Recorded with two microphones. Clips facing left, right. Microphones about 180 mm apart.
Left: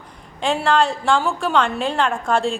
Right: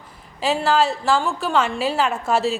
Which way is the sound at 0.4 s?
5° right (ahead or behind).